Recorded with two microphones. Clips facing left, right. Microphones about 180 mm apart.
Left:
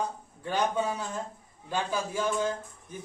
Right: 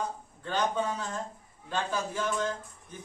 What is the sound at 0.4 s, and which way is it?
A man's voice, 10° left (ahead or behind).